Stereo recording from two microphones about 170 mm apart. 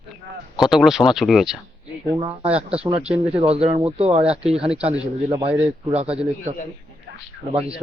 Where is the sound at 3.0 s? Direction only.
5° right (ahead or behind).